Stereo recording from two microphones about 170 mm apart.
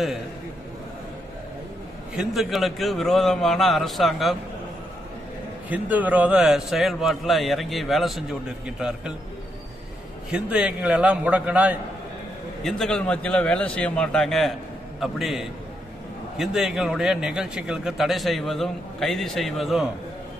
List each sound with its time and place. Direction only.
2.1 s a man's voice: centre (ahead or behind)
5.7 s a man's voice: 10° right (ahead or behind)
10.3 s a man's voice: 10° right (ahead or behind)
12.6 s a man's voice: centre (ahead or behind)